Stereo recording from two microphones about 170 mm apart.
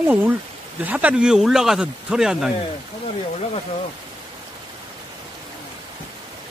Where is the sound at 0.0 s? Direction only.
10° right (ahead or behind).